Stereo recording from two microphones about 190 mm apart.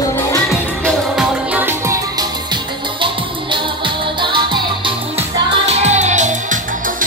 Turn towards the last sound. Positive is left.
turn(degrees=-40)  # may be behind; listen again after turning